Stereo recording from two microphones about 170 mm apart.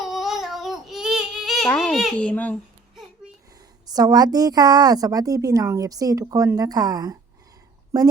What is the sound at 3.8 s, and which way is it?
A woman's voice, 20° right (ahead or behind).